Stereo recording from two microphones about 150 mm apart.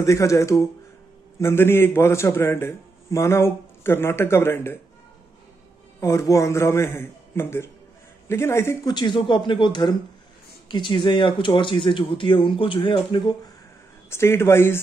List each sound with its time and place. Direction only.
0.0 s a man's voice: 20° left (ahead or behind)
5.9 s a man's voice: 20° left (ahead or behind)
8.9 s speech: 30° left (ahead or behind)
14.1 s a man's voice: 15° left (ahead or behind)